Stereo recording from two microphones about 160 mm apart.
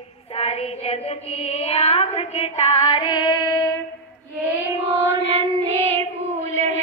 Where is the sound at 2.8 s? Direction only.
30° left (ahead or behind).